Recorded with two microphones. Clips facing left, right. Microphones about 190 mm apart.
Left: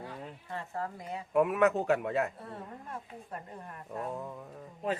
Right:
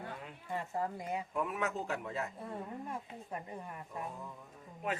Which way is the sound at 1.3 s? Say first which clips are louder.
Left 14 dB; 70° left (ahead or behind).